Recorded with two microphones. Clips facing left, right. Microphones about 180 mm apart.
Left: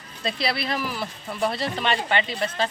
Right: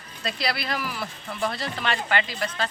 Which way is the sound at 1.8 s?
25° left (ahead or behind).